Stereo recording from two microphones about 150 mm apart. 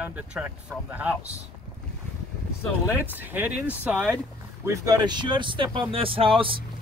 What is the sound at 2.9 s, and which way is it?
Speech, 10° right (ahead or behind).